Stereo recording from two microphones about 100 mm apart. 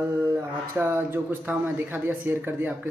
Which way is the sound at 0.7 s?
20° right (ahead or behind).